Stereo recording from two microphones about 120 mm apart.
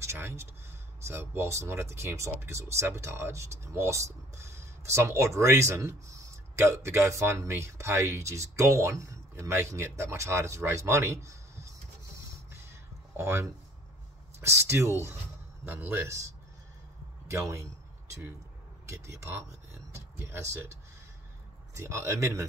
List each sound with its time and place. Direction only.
0.0 s speech: 20° right (ahead or behind)
13.1 s speech: 20° right (ahead or behind)
17.3 s speech: 25° right (ahead or behind)
18.9 s speech: 25° right (ahead or behind)
21.7 s speech: 25° right (ahead or behind)